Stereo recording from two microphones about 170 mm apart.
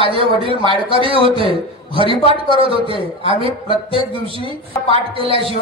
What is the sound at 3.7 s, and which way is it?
Speech, 30° right (ahead or behind).